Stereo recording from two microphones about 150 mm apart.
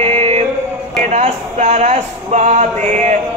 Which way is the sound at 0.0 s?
40° right (ahead or behind).